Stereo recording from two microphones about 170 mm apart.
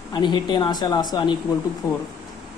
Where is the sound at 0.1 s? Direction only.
25° left (ahead or behind).